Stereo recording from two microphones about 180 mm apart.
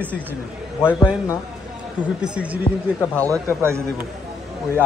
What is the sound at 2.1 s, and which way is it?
Speech, 5° right (ahead or behind).